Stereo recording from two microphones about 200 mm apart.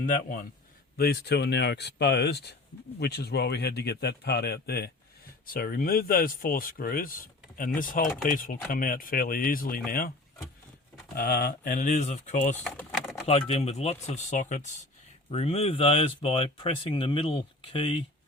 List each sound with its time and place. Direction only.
0.0 s a man's voice: 40° left (ahead or behind)
11.2 s speech: 45° left (ahead or behind)
12.6 s a sound: centre (ahead or behind)
13.2 s speech: 30° left (ahead or behind)